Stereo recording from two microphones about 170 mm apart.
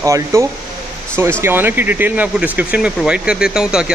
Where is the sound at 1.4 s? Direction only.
10° right (ahead or behind).